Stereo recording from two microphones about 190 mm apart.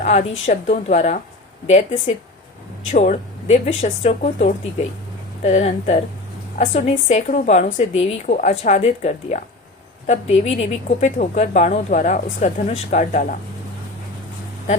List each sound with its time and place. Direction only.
0.0 s speech: 35° left (ahead or behind)